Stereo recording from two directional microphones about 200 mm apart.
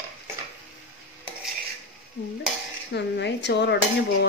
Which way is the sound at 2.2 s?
55° left (ahead or behind).